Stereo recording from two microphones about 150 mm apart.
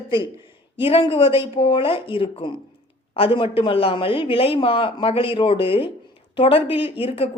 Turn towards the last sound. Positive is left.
turn(degrees=40)  # may be behind; listen again after turning